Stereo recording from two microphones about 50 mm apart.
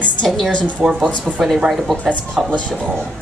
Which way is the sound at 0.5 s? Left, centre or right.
Left.